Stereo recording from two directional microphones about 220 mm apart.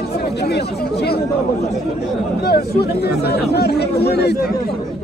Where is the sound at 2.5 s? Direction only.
45° left (ahead or behind).